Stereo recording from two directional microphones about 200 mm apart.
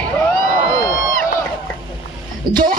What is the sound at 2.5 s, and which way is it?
Speech, 20° right (ahead or behind).